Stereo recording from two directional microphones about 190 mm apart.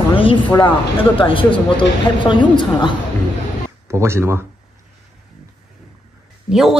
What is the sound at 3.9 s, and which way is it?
Speech, 15° right (ahead or behind).